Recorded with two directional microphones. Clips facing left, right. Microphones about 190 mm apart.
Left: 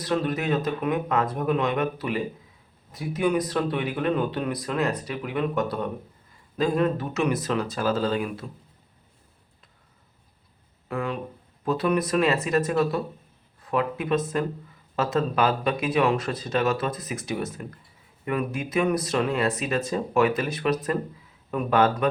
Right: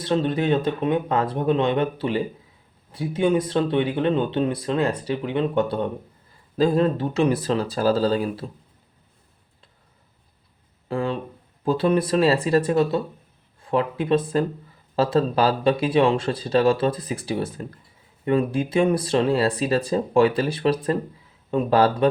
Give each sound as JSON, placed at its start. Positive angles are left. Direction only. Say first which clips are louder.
{"t": 0.0, "sound": "speech", "louder": "right 4 dB", "side_deg": -25}
{"t": 10.8, "sound": "speech", "louder": "right 4 dB", "side_deg": -30}